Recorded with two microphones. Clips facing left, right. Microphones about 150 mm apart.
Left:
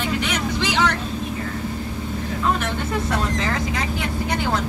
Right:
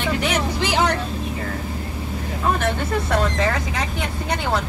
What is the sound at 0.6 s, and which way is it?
Vehicle, 45° right (ahead or behind).